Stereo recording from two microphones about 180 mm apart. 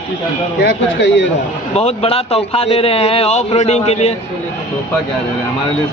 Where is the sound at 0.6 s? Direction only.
75° left (ahead or behind).